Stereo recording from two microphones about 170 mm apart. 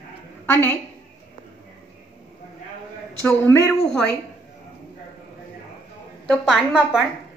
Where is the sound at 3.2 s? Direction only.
10° left (ahead or behind).